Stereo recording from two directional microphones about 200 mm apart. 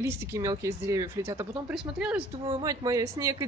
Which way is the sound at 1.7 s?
5° right (ahead or behind).